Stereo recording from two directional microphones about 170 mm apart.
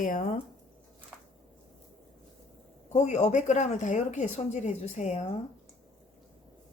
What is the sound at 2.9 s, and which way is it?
A woman's voice, 45° left (ahead or behind).